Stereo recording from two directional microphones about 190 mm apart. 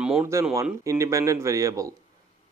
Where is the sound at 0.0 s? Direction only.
10° right (ahead or behind).